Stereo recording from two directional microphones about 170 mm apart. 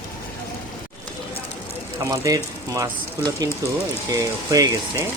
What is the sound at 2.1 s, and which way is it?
Speech, 20° right (ahead or behind).